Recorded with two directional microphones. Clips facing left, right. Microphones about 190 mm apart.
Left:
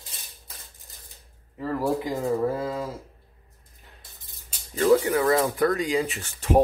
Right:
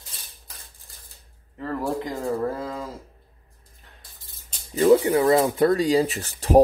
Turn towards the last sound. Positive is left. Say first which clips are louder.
# right 4 dB
turn(degrees=-35)  # may be behind; listen again after turning